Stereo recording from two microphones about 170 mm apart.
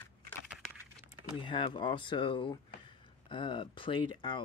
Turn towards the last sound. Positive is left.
turn(degrees=30)  # may be behind; listen again after turning